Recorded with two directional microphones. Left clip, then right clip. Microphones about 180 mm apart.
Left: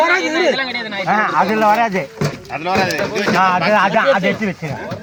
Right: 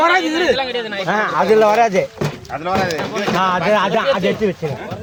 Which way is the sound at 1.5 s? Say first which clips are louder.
Right 2 dB; 75° right (ahead or behind).